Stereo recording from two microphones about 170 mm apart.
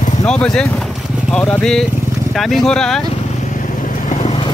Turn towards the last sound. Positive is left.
turn(degrees=45)  # may be behind; listen again after turning